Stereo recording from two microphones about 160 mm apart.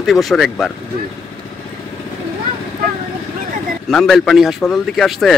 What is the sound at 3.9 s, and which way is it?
Speech, centre (ahead or behind).